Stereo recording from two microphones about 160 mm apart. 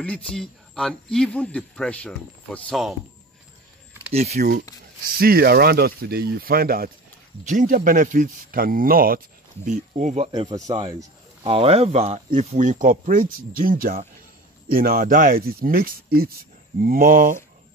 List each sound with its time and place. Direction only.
0.0 s speech: 5° left (ahead or behind)
4.1 s speech: 40° right (ahead or behind)
4.4 s speech: 70° right (ahead or behind)
7.4 s speech: 55° right (ahead or behind)
9.7 s speech: 50° right (ahead or behind)
10.3 s speech: 30° right (ahead or behind)
11.4 s speech: 35° right (ahead or behind); by 17.4 s 60° right (ahead or behind)